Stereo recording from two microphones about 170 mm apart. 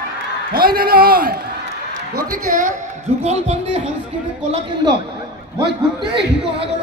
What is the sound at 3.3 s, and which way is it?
Speech, 40° right (ahead or behind).